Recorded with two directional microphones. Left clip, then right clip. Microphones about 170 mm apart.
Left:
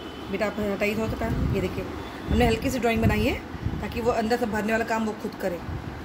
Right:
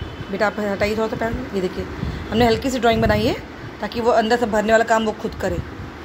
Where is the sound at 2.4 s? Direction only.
15° right (ahead or behind).